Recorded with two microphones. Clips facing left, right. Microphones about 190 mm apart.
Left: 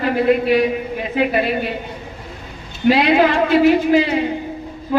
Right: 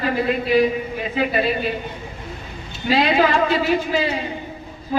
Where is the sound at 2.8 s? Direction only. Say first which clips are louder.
Left 4 dB; 60° left (ahead or behind).